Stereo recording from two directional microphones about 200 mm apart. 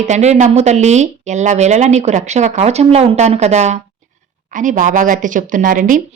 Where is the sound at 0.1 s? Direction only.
35° right (ahead or behind).